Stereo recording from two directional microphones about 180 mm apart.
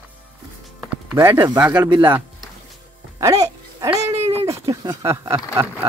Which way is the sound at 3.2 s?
20° right (ahead or behind).